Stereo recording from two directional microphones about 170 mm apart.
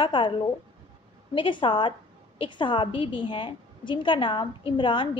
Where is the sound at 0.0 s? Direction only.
30° left (ahead or behind).